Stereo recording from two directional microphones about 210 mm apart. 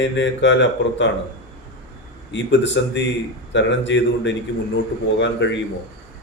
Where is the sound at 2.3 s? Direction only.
60° left (ahead or behind).